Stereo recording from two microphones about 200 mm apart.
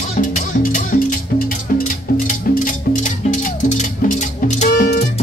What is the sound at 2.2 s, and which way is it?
Music, 40° left (ahead or behind).